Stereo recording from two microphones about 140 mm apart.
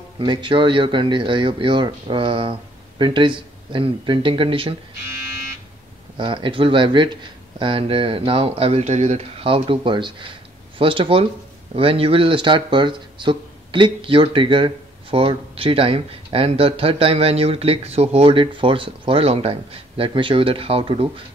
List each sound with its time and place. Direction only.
0.2 s speech: 35° right (ahead or behind)
6.1 s speech: 35° right (ahead or behind)